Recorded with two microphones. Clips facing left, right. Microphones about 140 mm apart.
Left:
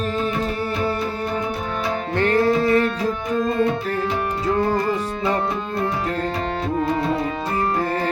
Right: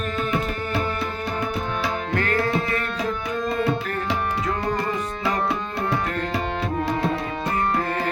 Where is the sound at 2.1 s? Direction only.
30° left (ahead or behind).